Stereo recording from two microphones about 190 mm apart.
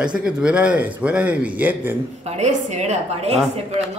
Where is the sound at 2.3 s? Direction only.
40° right (ahead or behind).